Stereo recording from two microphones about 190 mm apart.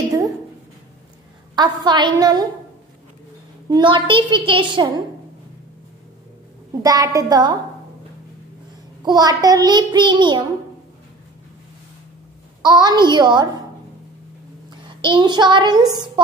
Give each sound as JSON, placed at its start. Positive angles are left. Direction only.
{"t": 1.5, "sound": "child singing", "side_deg": -20}
{"t": 3.7, "sound": "child singing", "side_deg": -25}
{"t": 6.8, "sound": "child singing", "side_deg": -20}
{"t": 9.0, "sound": "child singing", "side_deg": -20}
{"t": 12.6, "sound": "child singing", "side_deg": -20}
{"t": 15.0, "sound": "child singing", "side_deg": -25}